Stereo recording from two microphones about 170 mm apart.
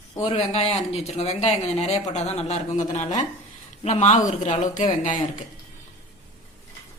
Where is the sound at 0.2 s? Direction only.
40° left (ahead or behind).